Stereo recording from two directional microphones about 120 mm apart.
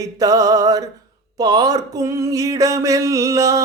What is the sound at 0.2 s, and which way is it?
Music, 30° right (ahead or behind).